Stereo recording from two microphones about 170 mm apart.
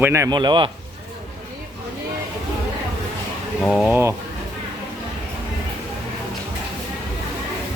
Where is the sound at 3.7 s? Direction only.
Centre (ahead or behind).